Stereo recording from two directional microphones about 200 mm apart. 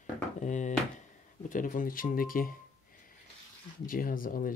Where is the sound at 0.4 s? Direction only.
35° left (ahead or behind).